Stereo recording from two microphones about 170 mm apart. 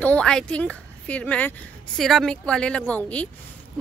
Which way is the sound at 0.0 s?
5° left (ahead or behind).